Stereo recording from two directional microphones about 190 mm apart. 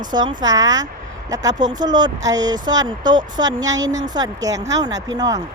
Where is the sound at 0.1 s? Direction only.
25° right (ahead or behind).